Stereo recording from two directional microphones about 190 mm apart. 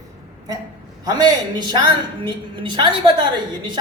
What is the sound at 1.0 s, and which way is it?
A woman's voice, 20° right (ahead or behind).